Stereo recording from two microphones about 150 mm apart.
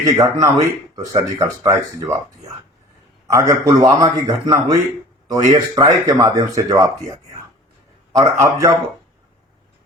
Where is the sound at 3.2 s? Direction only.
20° right (ahead or behind).